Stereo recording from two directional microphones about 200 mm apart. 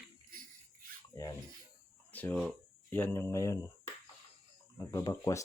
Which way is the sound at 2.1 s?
5° left (ahead or behind).